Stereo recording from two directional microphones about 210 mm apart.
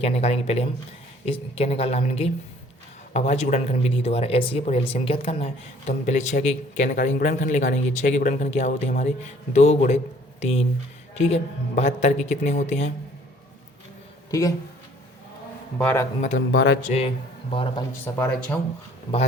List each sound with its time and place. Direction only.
0.0 s a woman's voice: 30° left (ahead or behind)
11.1 s speech: 30° left (ahead or behind)
14.3 s speech: 15° left (ahead or behind)
15.8 s a man's voice: 10° left (ahead or behind)
16.5 s speech: 55° left (ahead or behind)
16.8 s a woman's voice: 30° left (ahead or behind)
18.0 s speech: 5° left (ahead or behind)